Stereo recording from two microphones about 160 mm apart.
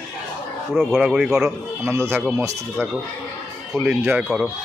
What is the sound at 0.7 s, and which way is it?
Speech, centre (ahead or behind).